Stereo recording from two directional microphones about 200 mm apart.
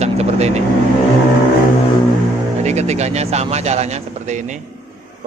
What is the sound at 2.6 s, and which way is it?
Speech, 35° right (ahead or behind).